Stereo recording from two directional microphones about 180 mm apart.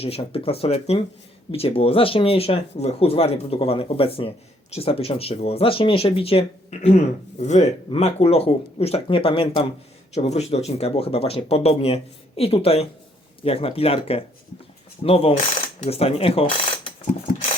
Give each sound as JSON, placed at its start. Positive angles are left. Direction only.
{"t": 0.0, "sound": "speech", "side_deg": 35}